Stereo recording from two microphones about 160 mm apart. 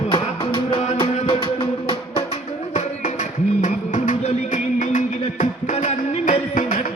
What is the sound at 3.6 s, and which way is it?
Music, 50° left (ahead or behind).